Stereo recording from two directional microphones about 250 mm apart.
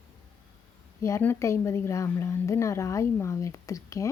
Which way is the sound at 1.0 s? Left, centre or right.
Centre.